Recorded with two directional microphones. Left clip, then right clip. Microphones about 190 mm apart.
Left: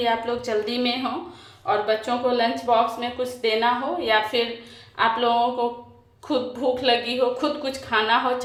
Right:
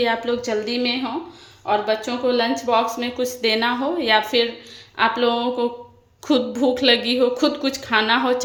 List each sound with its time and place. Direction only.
0.0 s speech: 35° right (ahead or behind)
0.4 s a woman's voice: 20° right (ahead or behind); by 8.4 s 40° right (ahead or behind)